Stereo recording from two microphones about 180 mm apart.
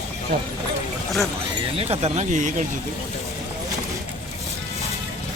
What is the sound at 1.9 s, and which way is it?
Speech, 35° right (ahead or behind).